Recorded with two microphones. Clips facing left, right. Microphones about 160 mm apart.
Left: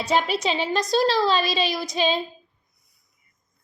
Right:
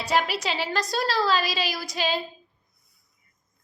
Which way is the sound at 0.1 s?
20° left (ahead or behind).